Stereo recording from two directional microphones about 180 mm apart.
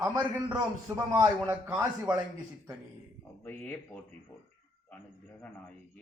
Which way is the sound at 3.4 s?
10° left (ahead or behind).